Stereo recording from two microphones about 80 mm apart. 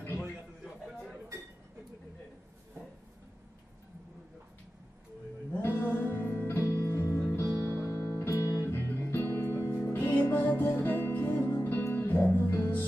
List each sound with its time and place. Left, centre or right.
5.5 s music: left